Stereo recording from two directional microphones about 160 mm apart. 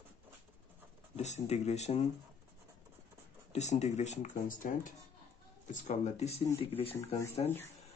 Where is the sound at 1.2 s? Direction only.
45° left (ahead or behind).